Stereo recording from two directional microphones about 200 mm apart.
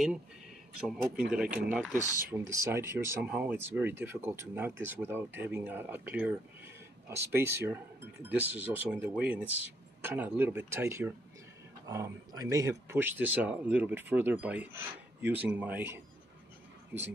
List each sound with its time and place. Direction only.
0.7 s speech: 5° right (ahead or behind)